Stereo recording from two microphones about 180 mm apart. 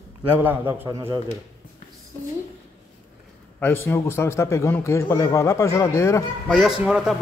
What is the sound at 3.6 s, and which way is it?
A man's voice, 10° left (ahead or behind).